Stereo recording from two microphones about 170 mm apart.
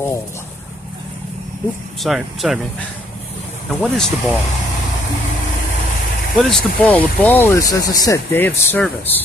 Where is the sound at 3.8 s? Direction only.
5° left (ahead or behind).